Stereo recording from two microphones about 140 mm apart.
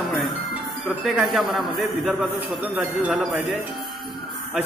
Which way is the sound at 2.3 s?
15° right (ahead or behind).